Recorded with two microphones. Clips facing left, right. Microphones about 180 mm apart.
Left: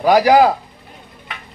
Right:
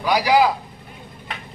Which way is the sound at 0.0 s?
50° left (ahead or behind).